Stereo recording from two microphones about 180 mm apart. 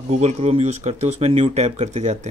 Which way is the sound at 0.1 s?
35° right (ahead or behind).